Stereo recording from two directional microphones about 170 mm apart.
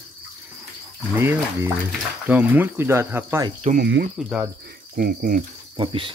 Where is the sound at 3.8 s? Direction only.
80° right.